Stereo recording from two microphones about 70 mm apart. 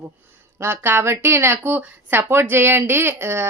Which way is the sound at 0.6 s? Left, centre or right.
Right.